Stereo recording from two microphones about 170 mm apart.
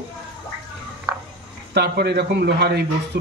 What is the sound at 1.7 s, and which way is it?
A man's voice, 85° right.